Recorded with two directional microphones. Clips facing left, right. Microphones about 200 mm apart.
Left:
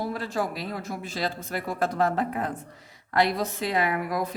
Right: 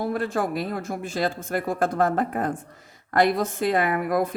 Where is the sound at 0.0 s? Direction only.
50° right (ahead or behind).